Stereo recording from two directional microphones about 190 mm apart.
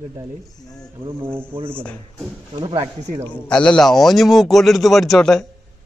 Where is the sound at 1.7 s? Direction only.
5° left (ahead or behind).